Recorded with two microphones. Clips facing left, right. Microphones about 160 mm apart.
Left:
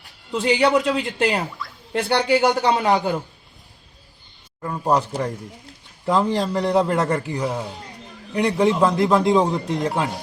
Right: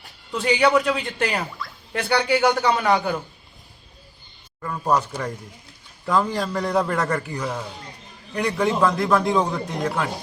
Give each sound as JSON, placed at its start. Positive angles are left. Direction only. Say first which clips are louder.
{"t": 0.3, "sound": "speech", "louder": "left 1 dB", "side_deg": 20}
{"t": 4.6, "sound": "speech", "louder": "left 2 dB", "side_deg": 20}